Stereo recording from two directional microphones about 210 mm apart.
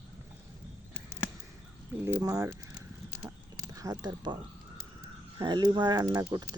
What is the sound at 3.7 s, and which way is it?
Speech, 15° right (ahead or behind).